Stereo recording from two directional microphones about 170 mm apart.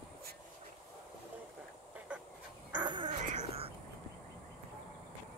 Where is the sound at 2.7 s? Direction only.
25° right (ahead or behind).